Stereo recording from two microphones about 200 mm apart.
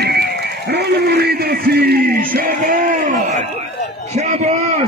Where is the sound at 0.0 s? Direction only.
50° right (ahead or behind).